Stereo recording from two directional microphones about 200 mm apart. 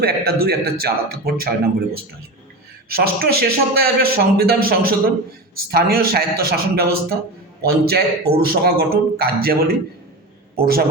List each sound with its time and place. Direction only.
0.0 s a man's voice: 50° right (ahead or behind)